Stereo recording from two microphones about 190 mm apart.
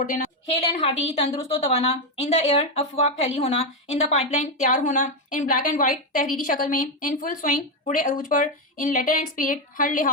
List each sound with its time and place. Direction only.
0.8 s a woman's voice: 35° left (ahead or behind)